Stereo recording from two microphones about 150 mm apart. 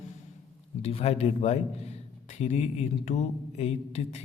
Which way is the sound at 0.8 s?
45° left (ahead or behind).